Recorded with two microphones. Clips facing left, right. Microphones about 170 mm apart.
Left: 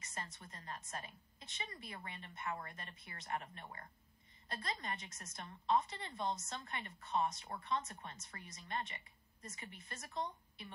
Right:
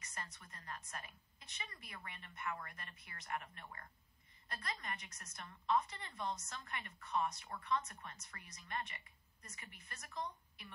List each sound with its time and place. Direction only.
0.0 s a woman's voice: 25° left (ahead or behind)